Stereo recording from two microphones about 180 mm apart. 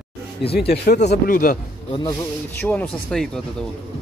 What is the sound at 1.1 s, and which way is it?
Speech, 50° left (ahead or behind).